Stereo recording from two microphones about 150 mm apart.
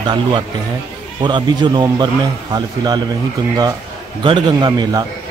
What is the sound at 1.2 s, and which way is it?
A man's voice, 30° right (ahead or behind).